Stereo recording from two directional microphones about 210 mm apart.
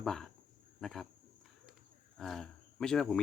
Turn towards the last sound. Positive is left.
turn(degrees=5)  # may be behind; listen again after turning